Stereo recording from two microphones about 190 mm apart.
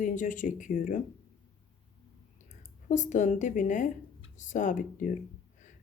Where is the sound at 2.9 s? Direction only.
40° left (ahead or behind).